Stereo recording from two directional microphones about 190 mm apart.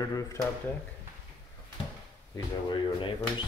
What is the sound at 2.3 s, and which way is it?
Speech, 20° left (ahead or behind).